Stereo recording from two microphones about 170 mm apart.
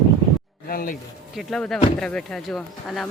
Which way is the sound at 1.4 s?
Centre (ahead or behind).